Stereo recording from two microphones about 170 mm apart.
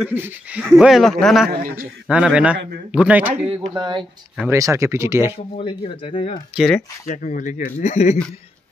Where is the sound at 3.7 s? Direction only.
25° right (ahead or behind).